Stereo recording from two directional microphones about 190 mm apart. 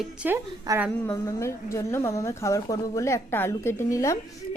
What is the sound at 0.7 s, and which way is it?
Speech, 20° right (ahead or behind).